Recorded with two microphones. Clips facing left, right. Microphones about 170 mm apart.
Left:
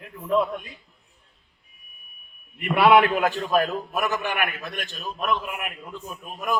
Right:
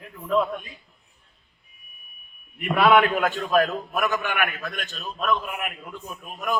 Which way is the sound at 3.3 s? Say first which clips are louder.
Right 1 dB; 30° left (ahead or behind).